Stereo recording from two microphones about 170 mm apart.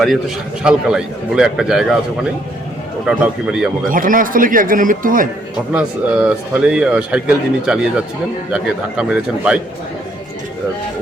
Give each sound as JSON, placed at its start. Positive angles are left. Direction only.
{"t": 0.6, "sound": "speech", "side_deg": -5}
{"t": 3.1, "sound": "speech", "side_deg": -5}
{"t": 3.8, "sound": "speech", "side_deg": -55}
{"t": 5.7, "sound": "speech", "side_deg": -5}